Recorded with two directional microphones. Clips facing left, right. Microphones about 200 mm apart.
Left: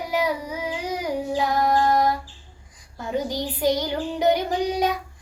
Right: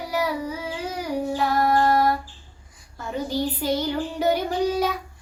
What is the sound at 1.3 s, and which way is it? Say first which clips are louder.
Child singing: even; 15° left (ahead or behind).